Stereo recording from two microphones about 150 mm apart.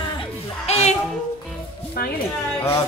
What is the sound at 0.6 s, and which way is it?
Music, 45° left (ahead or behind).